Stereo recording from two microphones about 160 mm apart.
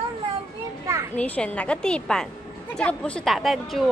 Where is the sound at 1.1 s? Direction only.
10° left (ahead or behind).